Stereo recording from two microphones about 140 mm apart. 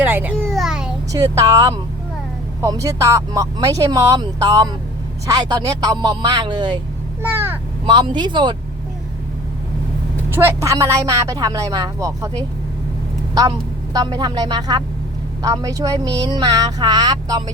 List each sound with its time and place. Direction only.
0.0 s a sound: 10° right (ahead or behind)
1.1 s speech: 25° right (ahead or behind)
7.2 s a sound: 15° right (ahead or behind)
7.9 s speech: 35° right (ahead or behind)
10.2 s speech: 20° right (ahead or behind)
13.9 s speech: 30° right (ahead or behind)